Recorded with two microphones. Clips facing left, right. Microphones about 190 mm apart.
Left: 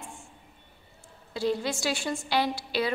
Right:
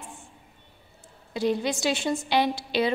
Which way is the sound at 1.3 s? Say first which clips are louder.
Right 3 dB; 20° right (ahead or behind).